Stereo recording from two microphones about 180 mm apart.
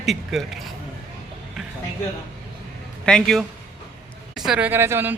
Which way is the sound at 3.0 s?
5° left (ahead or behind).